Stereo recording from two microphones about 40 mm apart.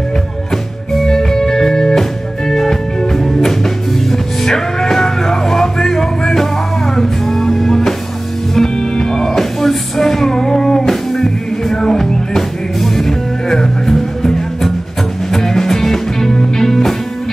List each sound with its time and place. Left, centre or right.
1.0 s music: centre